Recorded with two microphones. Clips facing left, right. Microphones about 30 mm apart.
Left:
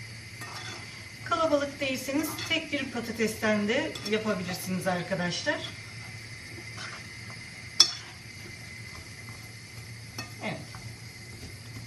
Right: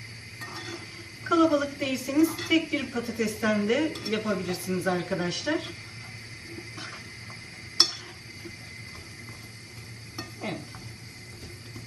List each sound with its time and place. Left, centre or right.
0.3 s a sound: centre
1.3 s a woman's voice: centre
6.6 s wild animals: centre
10.5 s stir: centre